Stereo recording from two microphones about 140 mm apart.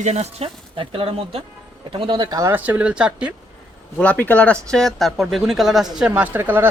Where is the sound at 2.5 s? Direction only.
10° right (ahead or behind).